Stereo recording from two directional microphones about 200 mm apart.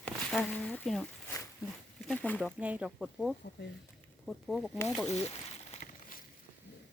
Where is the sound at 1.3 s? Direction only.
15° left (ahead or behind).